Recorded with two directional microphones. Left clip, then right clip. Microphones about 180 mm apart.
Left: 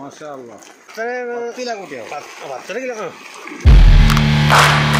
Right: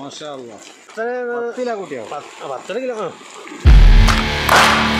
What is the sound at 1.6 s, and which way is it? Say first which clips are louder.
Speech: right 2 dB; 45° right (ahead or behind).